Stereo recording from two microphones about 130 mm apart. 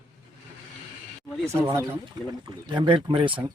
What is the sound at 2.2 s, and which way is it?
Speech, 35° right (ahead or behind).